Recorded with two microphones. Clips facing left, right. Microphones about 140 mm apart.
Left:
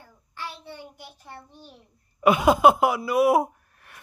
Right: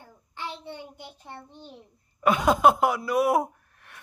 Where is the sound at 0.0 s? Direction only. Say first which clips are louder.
Right 1 dB; 20° right (ahead or behind).